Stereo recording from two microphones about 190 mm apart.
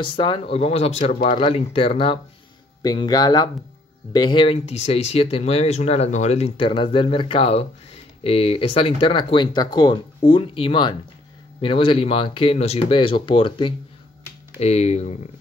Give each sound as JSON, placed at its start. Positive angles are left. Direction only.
{"t": 0.0, "sound": "speech", "side_deg": 25}